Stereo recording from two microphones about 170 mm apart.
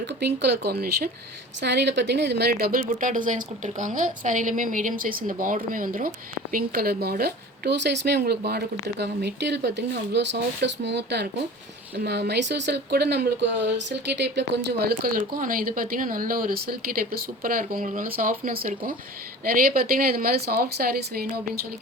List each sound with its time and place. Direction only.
0.2 s speech: 80° right
1.6 s speech: 90° right
11.9 s speech: 70° right (ahead or behind)